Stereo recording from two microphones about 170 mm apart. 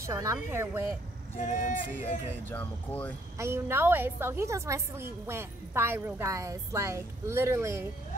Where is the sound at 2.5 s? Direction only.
10° left (ahead or behind).